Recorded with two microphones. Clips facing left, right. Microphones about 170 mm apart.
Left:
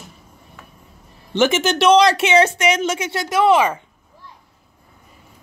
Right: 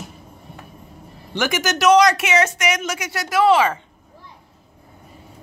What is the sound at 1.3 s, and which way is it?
Speech, 25° left (ahead or behind).